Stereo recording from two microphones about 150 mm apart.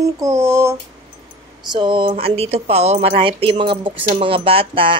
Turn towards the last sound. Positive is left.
turn(degrees=-35)  # may be behind; listen again after turning